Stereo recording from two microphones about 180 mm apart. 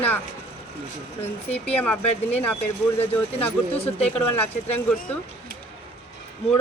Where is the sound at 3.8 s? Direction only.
35° left (ahead or behind).